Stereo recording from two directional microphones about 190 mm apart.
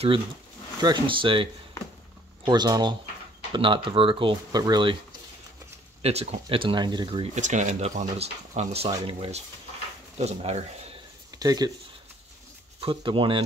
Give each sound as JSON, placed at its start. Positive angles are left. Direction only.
{"t": 0.7, "sound": "speech", "side_deg": -25}
{"t": 6.0, "sound": "speech", "side_deg": -30}
{"t": 7.3, "sound": "speech", "side_deg": -40}
{"t": 11.3, "sound": "speech", "side_deg": -20}
{"t": 12.8, "sound": "speech", "side_deg": -25}